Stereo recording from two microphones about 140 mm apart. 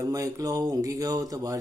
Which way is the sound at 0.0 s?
25° right (ahead or behind).